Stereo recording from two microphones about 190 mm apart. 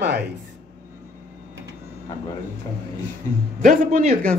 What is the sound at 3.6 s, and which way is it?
Speech, 45° right (ahead or behind).